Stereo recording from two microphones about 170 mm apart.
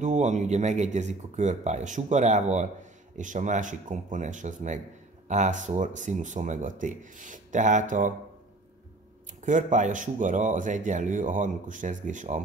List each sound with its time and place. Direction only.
0.0 s speech: 45° right (ahead or behind)
9.4 s speech: 45° right (ahead or behind)